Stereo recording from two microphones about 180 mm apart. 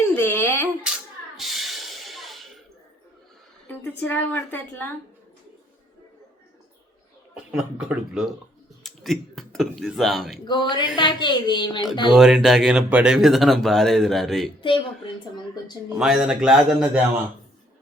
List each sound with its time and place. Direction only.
0.2 s a sound: 10° left (ahead or behind)
1.4 s a sound: centre (ahead or behind)
3.7 s a woman's voice: 10° left (ahead or behind)
7.5 s speech: 5° right (ahead or behind)
10.4 s speech: 25° left (ahead or behind)
12.1 s speech: centre (ahead or behind)
14.6 s speech: 30° left (ahead or behind)
16.0 s speech: 5° right (ahead or behind)